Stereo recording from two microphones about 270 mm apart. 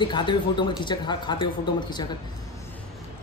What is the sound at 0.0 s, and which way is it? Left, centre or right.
Speech, centre.